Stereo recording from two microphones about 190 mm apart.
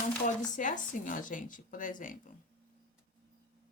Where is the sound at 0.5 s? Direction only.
40° left (ahead or behind).